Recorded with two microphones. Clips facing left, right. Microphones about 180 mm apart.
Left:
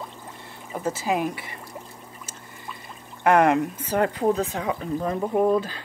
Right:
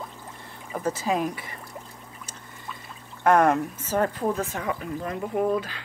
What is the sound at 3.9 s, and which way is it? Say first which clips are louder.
Speech: left 3 dB; 15° left (ahead or behind).